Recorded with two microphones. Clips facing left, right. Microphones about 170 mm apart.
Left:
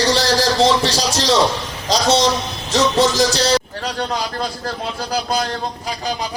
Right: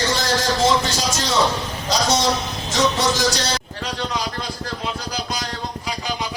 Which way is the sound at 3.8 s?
50° left (ahead or behind).